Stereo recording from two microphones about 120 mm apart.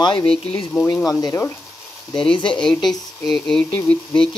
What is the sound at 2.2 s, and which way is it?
Speech, 45° left (ahead or behind).